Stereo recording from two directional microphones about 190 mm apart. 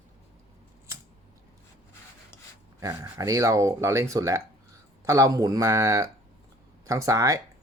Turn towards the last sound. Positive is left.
turn(degrees=-15)  # may be behind; listen again after turning